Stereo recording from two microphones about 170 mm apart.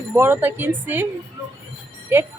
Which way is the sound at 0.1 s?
10° right (ahead or behind).